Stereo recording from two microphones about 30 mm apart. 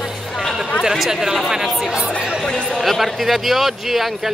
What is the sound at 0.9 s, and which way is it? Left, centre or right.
Speech, centre.